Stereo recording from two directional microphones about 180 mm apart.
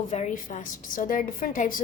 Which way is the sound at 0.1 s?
40° left (ahead or behind).